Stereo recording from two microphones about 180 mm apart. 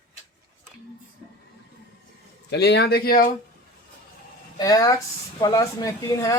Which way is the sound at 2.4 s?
65° left (ahead or behind).